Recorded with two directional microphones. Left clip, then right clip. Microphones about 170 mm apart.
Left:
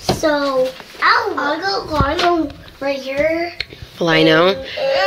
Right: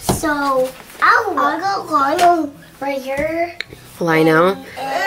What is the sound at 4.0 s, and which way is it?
Speech, 10° right (ahead or behind).